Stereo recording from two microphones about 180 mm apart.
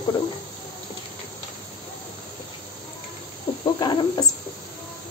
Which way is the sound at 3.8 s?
25° left (ahead or behind).